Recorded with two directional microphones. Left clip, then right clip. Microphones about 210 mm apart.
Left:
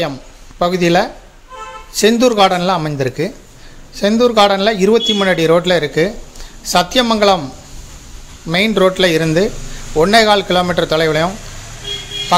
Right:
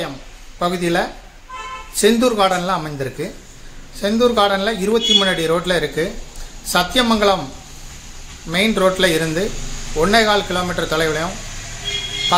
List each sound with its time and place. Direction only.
0.6 s a man's voice: 40° left (ahead or behind)
8.5 s a man's voice: 40° left (ahead or behind)